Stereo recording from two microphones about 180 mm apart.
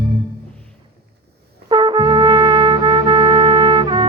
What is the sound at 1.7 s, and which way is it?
Trumpet, 25° right (ahead or behind).